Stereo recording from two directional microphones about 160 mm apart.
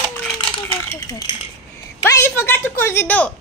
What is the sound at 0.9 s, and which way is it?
A woman's voice, 25° left (ahead or behind).